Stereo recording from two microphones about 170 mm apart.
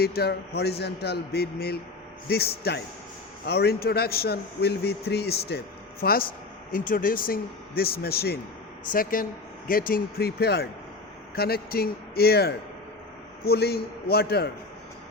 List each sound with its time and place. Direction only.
0.0 s a man's voice: 70° left (ahead or behind)
8.9 s a man's voice: 55° left (ahead or behind)